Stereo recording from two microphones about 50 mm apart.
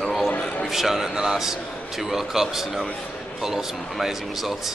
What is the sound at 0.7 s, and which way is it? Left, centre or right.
A man's voice, centre.